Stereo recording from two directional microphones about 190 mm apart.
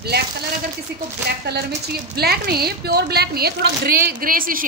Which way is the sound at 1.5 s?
60° right (ahead or behind).